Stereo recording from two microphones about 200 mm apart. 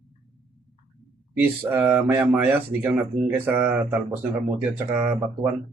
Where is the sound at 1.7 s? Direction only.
10° right (ahead or behind).